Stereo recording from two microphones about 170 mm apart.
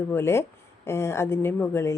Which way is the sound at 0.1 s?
15° left (ahead or behind).